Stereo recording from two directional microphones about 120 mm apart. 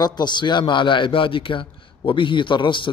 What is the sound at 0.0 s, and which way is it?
A man's voice, 35° left (ahead or behind).